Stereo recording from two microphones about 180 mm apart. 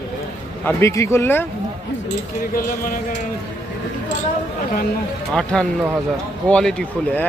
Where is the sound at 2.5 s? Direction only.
50° left (ahead or behind).